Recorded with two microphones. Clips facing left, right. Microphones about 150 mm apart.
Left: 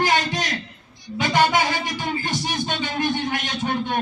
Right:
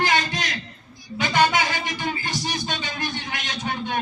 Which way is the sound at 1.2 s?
50° left (ahead or behind).